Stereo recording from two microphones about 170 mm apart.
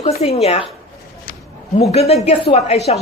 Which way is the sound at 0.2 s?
35° left (ahead or behind).